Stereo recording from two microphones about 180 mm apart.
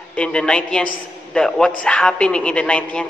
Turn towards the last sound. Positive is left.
turn(degrees=5)  # may be behind; listen again after turning